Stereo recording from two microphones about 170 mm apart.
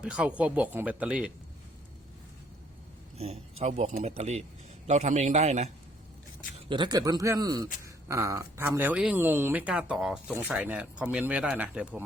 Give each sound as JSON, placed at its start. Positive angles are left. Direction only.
{"t": 0.0, "sound": "speech", "side_deg": -5}
{"t": 3.2, "sound": "a man's voice", "side_deg": -40}
{"t": 6.7, "sound": "speech", "side_deg": -25}